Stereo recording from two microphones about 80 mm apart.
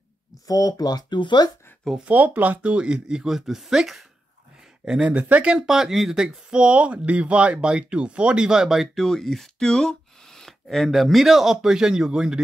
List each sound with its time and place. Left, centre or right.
0.5 s speech: left
2.0 s speech: centre